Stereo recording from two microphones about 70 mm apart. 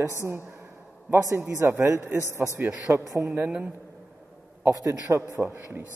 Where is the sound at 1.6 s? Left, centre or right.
Right.